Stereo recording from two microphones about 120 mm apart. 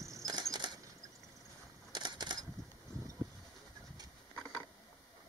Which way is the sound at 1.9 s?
40° right (ahead or behind).